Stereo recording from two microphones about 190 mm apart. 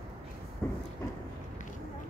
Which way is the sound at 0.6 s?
10° left (ahead or behind).